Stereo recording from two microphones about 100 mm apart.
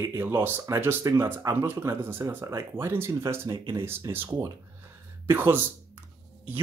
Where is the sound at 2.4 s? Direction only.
35° right (ahead or behind).